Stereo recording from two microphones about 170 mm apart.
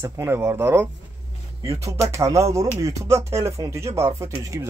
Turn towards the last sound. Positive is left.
turn(degrees=-20)  # may be behind; listen again after turning